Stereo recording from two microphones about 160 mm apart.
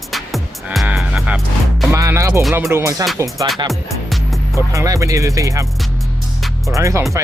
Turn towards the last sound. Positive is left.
turn(degrees=-20)  # may be behind; listen again after turning